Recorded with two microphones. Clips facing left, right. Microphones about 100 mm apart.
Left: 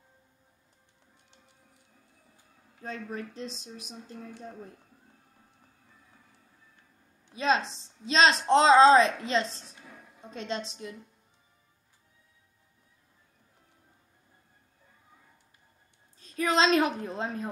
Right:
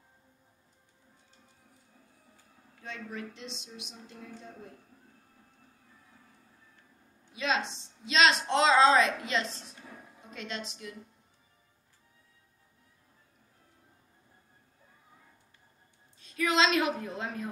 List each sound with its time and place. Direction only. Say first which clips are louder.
2.8 s a woman's voice: left 3 dB; 40° left (ahead or behind)
7.3 s a woman's voice: left 4 dB; 35° left (ahead or behind)
16.2 s a woman's voice: left 2 dB; 35° left (ahead or behind)